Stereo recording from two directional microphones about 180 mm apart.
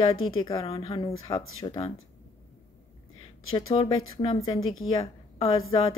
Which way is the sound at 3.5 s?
25° left (ahead or behind).